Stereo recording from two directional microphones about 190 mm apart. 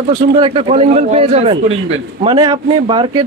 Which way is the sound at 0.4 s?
30° right (ahead or behind).